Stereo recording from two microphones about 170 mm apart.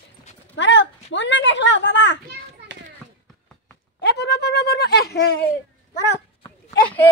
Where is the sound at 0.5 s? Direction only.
90° left.